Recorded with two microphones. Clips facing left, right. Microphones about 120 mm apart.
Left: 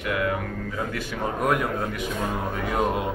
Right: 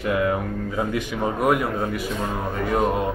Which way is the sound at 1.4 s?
5° right (ahead or behind).